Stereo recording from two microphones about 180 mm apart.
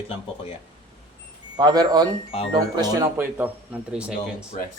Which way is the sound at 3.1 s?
10° right (ahead or behind).